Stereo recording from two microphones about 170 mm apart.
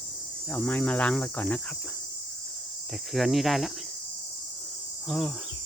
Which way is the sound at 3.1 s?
Centre (ahead or behind).